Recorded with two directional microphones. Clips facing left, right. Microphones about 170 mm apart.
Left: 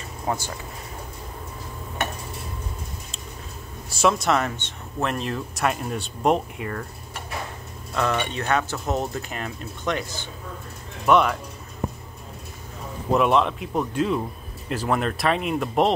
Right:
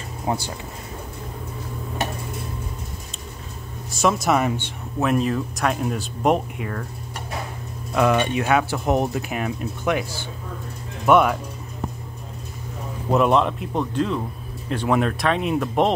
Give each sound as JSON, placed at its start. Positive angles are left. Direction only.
{"t": 0.3, "sound": "speech", "side_deg": -20}
{"t": 3.9, "sound": "speech", "side_deg": 0}
{"t": 7.9, "sound": "speech", "side_deg": -10}
{"t": 13.1, "sound": "speech", "side_deg": 0}